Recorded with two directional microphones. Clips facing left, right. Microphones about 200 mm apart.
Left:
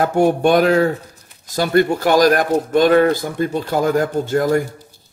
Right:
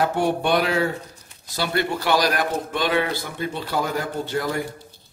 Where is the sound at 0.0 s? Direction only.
45° left (ahead or behind).